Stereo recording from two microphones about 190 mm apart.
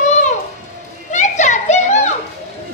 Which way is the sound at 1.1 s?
40° left (ahead or behind).